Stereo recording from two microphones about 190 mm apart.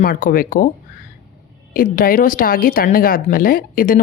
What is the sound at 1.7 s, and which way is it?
Speech, 50° left (ahead or behind).